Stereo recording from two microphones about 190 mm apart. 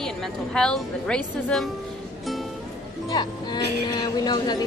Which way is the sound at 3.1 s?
20° left (ahead or behind).